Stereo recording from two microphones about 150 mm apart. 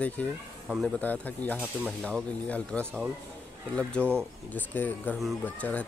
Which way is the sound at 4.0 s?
15° right (ahead or behind).